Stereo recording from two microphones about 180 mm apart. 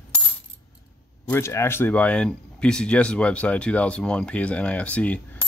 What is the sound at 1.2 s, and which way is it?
Speech, 10° left (ahead or behind).